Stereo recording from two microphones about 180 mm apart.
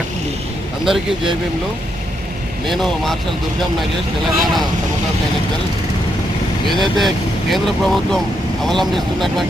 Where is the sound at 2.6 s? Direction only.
Centre (ahead or behind).